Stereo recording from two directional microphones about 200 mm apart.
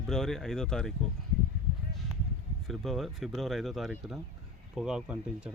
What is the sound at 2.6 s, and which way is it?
Speech, centre (ahead or behind).